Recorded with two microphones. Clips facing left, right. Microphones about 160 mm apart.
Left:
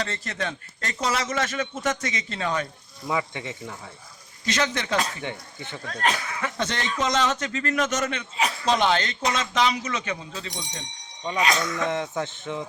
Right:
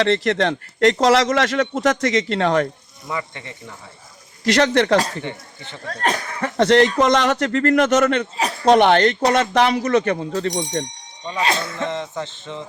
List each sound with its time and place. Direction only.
0.0 s speech: 80° right
3.1 s speech: 10° left (ahead or behind)
4.4 s speech: 70° right (ahead or behind)
5.9 s speech: 40° right (ahead or behind)
6.6 s speech: 65° right (ahead or behind)
11.3 s speech: 30° right (ahead or behind)
11.9 s speech: 10° left (ahead or behind)